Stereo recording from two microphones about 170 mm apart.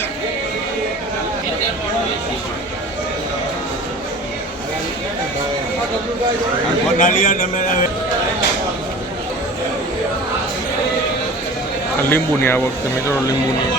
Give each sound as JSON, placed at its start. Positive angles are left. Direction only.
{"t": 7.0, "sound": "speech", "side_deg": 50}
{"t": 12.0, "sound": "speech", "side_deg": 15}